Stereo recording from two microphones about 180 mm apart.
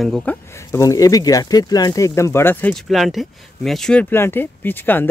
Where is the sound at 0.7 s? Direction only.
20° left (ahead or behind).